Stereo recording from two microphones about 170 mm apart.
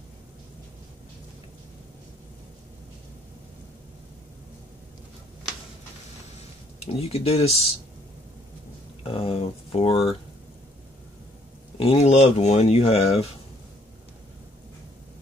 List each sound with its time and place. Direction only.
6.9 s speech: 35° left (ahead or behind)
9.0 s speech: 35° left (ahead or behind)
11.8 s speech: 35° left (ahead or behind)